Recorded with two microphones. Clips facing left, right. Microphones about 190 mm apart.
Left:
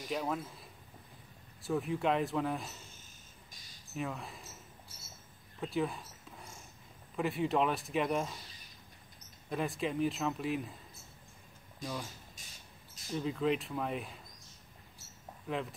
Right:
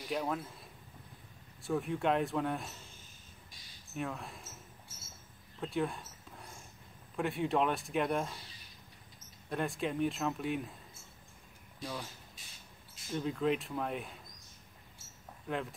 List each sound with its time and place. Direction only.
0.1 s speech: centre (ahead or behind)
3.9 s speech: centre (ahead or behind)
5.6 s a sound: centre (ahead or behind)
7.2 s speech: centre (ahead or behind)
9.5 s speech: centre (ahead or behind)
11.8 s speech: 45° left (ahead or behind)
12.4 s a sound: 45° left (ahead or behind)
13.1 s speech: centre (ahead or behind)
15.4 s speech: centre (ahead or behind)